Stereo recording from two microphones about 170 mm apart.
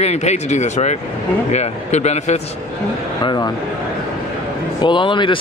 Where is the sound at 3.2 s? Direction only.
25° left (ahead or behind).